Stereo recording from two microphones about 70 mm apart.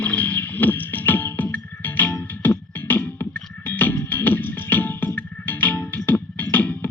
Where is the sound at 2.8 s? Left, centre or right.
Left.